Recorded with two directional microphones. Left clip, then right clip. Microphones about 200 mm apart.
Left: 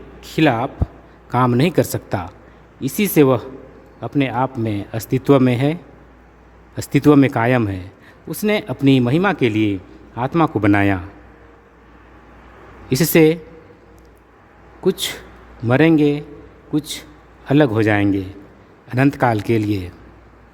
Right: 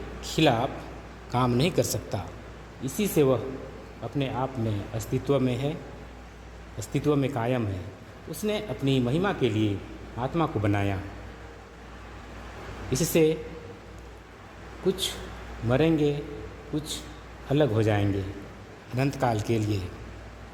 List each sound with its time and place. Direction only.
0.3 s speech: 45° left (ahead or behind)
6.7 s speech: 50° left (ahead or behind)
12.9 s speech: 50° left (ahead or behind)
14.8 s speech: 50° left (ahead or behind)